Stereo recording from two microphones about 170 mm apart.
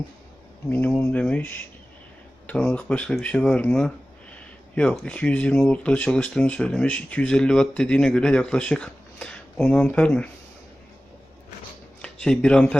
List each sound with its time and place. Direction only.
0.7 s speech: 10° left (ahead or behind)
12.0 s speech: 5° left (ahead or behind)